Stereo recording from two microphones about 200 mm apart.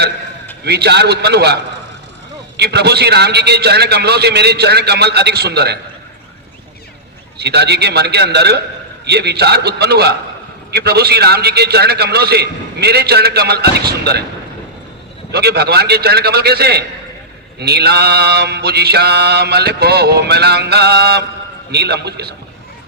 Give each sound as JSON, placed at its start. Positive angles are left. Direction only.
{"t": 0.6, "sound": "a man's voice", "side_deg": -55}
{"t": 7.3, "sound": "a man's voice", "side_deg": -55}
{"t": 9.0, "sound": "mantra", "side_deg": -55}
{"t": 15.3, "sound": "mantra", "side_deg": -55}